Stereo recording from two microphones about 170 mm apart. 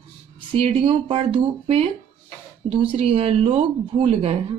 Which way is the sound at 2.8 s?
35° right (ahead or behind).